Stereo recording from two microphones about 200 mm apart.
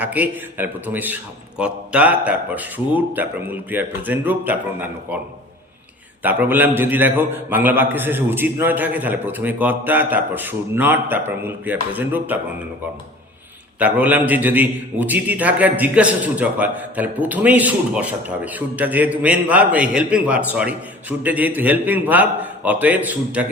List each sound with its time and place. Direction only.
0.0 s a man's voice: 10° right (ahead or behind)
6.2 s a man's voice: 10° right (ahead or behind)
13.7 s a man's voice: 10° right (ahead or behind)